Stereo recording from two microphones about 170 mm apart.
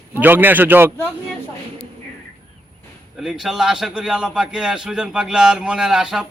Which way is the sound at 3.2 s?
Centre (ahead or behind).